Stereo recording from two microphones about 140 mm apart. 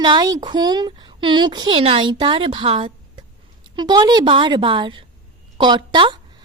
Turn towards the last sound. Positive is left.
turn(degrees=-35)  # may be behind; listen again after turning